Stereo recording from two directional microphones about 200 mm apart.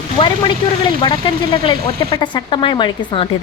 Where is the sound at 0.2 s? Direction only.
25° left (ahead or behind).